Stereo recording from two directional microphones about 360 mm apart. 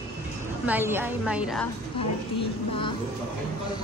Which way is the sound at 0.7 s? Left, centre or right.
Centre.